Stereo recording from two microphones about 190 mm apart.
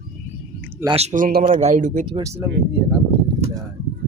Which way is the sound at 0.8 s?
35° right (ahead or behind).